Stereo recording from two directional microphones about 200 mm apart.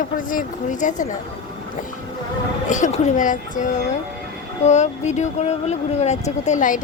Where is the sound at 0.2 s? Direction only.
40° left (ahead or behind).